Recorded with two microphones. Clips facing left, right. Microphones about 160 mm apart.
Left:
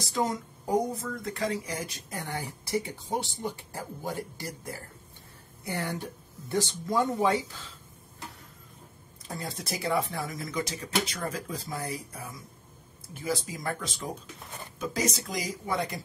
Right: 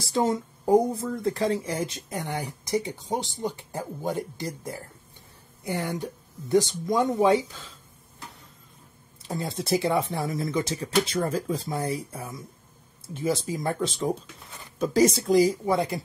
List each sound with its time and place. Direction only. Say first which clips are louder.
0.0 s speech: right 5 dB; 30° right (ahead or behind)
9.3 s speech: right 9 dB; 25° right (ahead or behind)